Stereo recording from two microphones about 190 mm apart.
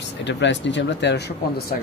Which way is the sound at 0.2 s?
70° left (ahead or behind).